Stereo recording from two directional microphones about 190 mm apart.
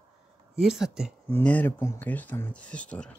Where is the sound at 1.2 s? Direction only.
10° left (ahead or behind).